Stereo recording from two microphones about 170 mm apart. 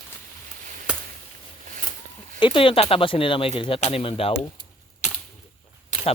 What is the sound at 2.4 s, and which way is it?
Speech, 30° left (ahead or behind).